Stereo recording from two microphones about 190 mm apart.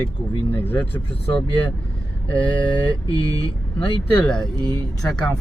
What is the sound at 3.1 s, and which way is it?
Speech, 20° right (ahead or behind).